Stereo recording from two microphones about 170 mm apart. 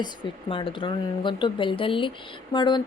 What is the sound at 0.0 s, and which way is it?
Speech, 30° left (ahead or behind).